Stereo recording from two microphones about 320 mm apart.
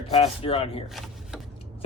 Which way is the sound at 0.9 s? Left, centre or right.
Centre.